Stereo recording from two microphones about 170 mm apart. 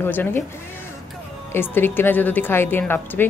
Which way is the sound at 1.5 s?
10° left (ahead or behind).